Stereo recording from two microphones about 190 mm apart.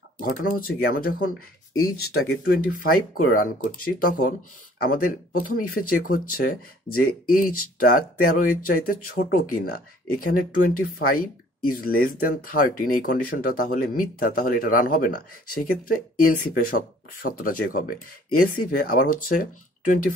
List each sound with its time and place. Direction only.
0.2 s speech: 50° left (ahead or behind)
1.7 s speech: 90° left
2.2 s speech: 55° left (ahead or behind)